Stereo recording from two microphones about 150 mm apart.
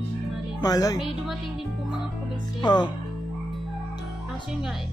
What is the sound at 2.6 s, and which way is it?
Speech, 30° left (ahead or behind).